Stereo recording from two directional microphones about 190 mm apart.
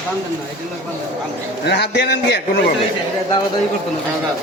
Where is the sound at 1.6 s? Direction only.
60° left (ahead or behind).